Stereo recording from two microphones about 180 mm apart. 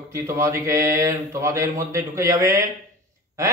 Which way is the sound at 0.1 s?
15° right (ahead or behind).